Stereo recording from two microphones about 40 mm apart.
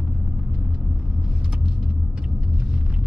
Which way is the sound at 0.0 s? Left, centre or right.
Right.